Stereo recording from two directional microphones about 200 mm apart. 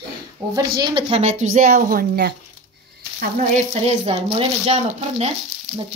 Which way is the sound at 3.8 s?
30° right (ahead or behind).